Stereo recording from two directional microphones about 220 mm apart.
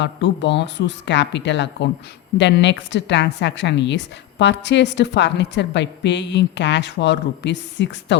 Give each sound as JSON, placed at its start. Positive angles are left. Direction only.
{"t": 0.0, "sound": "a woman's voice", "side_deg": 55}